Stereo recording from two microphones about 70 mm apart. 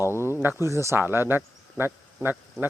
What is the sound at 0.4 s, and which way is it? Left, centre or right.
Speech, right.